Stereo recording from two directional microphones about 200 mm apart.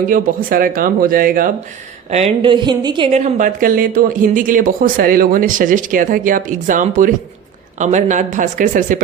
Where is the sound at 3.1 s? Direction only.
40° right (ahead or behind).